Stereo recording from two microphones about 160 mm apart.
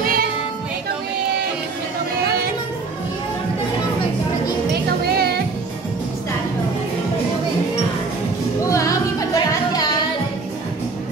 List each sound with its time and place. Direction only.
0.0 s music: 65° right (ahead or behind)
5.0 s music: 85° right
8.6 s music: 20° left (ahead or behind)